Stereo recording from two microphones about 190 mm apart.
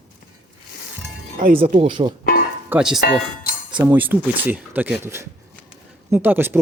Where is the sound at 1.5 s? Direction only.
30° right (ahead or behind).